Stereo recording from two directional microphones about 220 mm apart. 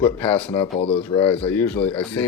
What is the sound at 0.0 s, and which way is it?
Speech, 5° left (ahead or behind).